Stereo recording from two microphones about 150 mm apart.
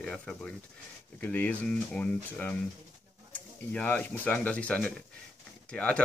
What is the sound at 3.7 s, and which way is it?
Speech, 10° left (ahead or behind).